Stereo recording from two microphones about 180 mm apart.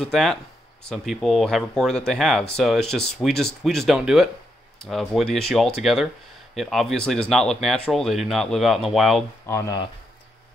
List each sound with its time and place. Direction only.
0.0 s speech: centre (ahead or behind)
9.5 s speech: 15° left (ahead or behind)